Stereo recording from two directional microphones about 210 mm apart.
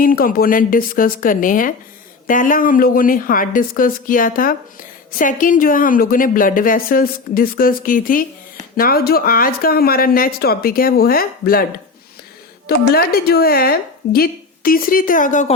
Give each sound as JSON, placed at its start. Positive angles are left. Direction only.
{"t": 0.0, "sound": "a woman's voice", "side_deg": 40}
{"t": 12.6, "sound": "speech", "side_deg": 45}